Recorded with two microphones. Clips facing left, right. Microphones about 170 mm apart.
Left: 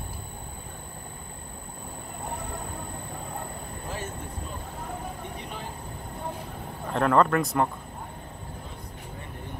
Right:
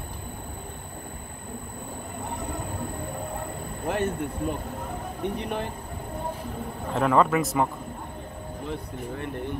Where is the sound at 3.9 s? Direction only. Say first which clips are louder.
Right 11 dB; 65° right (ahead or behind).